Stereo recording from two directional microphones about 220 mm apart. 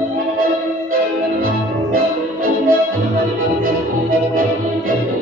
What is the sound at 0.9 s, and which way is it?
Music, 40° right (ahead or behind).